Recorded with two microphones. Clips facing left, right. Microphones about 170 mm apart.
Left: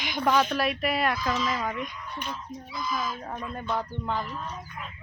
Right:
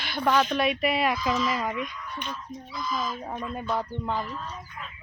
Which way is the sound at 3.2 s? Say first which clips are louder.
Right 2 dB; 10° right (ahead or behind).